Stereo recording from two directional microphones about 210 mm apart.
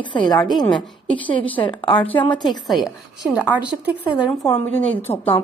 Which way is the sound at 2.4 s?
Centre (ahead or behind).